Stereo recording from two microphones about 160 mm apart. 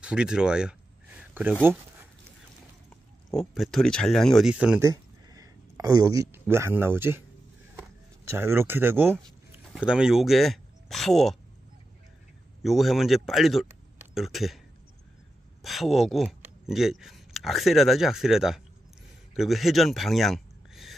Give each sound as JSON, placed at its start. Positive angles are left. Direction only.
{"t": 0.0, "sound": "a sound", "side_deg": -5}
{"t": 3.5, "sound": "speech", "side_deg": 0}
{"t": 4.7, "sound": "a sound", "side_deg": -20}
{"t": 6.4, "sound": "speech", "side_deg": -15}
{"t": 8.3, "sound": "speech", "side_deg": -15}
{"t": 12.6, "sound": "speech", "side_deg": 0}
{"t": 15.6, "sound": "speech", "side_deg": 0}